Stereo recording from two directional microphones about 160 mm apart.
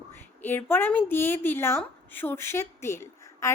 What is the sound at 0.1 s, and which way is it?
A woman's voice, 15° left (ahead or behind).